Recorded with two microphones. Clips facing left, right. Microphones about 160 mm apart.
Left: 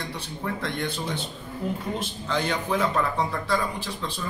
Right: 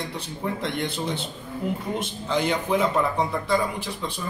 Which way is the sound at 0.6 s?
25° right (ahead or behind).